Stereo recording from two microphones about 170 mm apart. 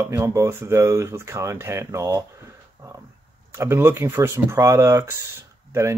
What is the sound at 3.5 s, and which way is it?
Speech, 15° right (ahead or behind).